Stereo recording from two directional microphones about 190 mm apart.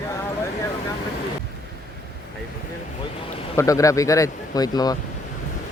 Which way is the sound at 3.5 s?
15° left (ahead or behind).